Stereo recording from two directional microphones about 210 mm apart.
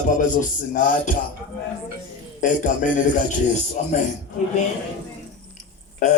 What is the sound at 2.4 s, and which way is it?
Speech, 40° left (ahead or behind).